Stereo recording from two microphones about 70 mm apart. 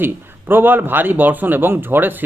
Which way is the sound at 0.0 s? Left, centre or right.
Right.